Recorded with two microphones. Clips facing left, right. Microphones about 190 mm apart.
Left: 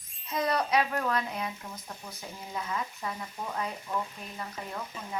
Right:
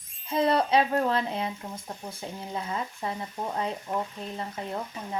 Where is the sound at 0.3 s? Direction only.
30° right (ahead or behind).